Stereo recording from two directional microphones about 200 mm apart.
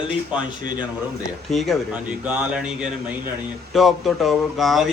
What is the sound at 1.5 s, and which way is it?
Speech, centre (ahead or behind).